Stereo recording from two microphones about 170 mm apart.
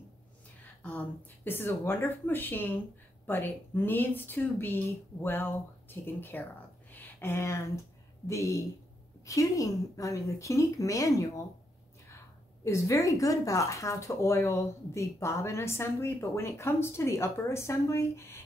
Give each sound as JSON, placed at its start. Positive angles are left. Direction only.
{"t": 0.8, "sound": "speech", "side_deg": 10}
{"t": 6.9, "sound": "a sound", "side_deg": 10}
{"t": 8.3, "sound": "speech", "side_deg": 15}
{"t": 12.6, "sound": "speech", "side_deg": 15}